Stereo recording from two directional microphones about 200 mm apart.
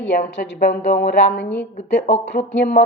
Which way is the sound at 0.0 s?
60° left (ahead or behind).